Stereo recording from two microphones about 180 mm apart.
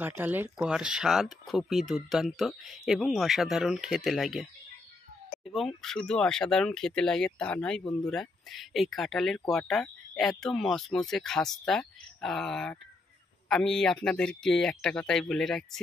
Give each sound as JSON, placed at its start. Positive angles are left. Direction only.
{"t": 0.0, "sound": "speech", "side_deg": -10}
{"t": 5.8, "sound": "speech", "side_deg": 5}